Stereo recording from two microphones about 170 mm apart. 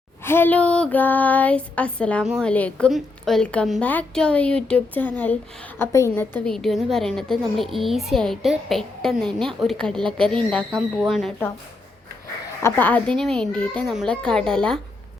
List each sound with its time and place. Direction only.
0.3 s a woman's voice: 10° left (ahead or behind)
2.2 s a woman's voice: 5° right (ahead or behind)
2.5 s a woman's voice: 5° left (ahead or behind)
12.6 s a woman's voice: 10° left (ahead or behind)